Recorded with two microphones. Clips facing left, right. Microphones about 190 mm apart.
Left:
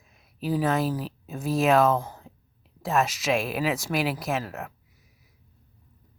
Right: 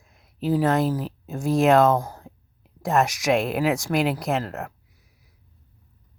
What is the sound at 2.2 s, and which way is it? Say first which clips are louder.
Whispering: right 4 dB; 70° right (ahead or behind).